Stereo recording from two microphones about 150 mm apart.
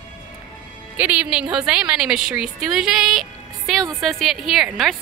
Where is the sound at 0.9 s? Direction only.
10° right (ahead or behind).